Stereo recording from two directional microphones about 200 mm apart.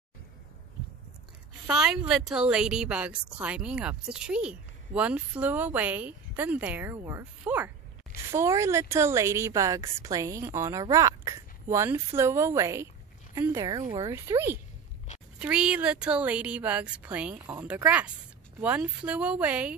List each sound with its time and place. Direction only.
1.7 s a woman's voice: centre (ahead or behind)